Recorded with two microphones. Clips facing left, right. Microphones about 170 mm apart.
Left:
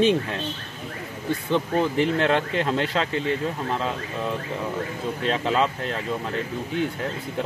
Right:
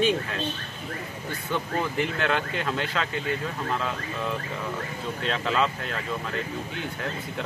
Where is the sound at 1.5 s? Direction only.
25° left (ahead or behind).